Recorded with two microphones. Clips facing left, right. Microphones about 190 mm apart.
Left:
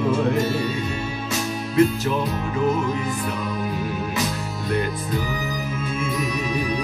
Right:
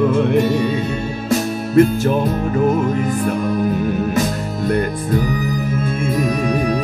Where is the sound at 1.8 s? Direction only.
50° right (ahead or behind).